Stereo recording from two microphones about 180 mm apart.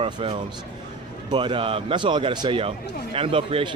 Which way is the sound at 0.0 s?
30° right (ahead or behind).